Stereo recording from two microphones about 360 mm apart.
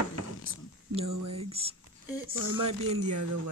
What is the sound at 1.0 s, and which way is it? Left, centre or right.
Speech, right.